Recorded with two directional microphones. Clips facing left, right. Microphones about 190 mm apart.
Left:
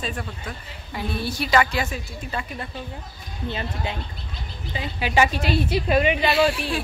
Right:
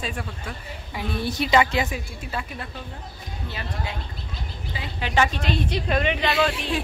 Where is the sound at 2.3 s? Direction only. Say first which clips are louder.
Left 1 dB; 5° right (ahead or behind).